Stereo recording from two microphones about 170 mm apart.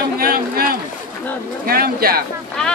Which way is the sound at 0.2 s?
60° right (ahead or behind).